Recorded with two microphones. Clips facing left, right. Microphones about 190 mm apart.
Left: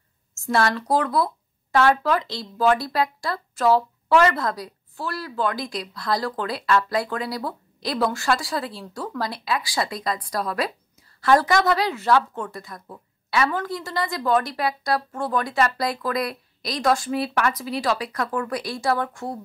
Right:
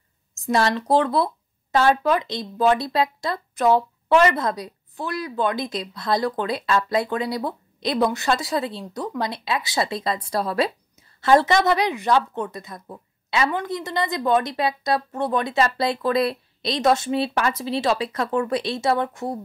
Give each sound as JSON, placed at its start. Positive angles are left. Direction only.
{"t": 0.3, "sound": "speech", "side_deg": -20}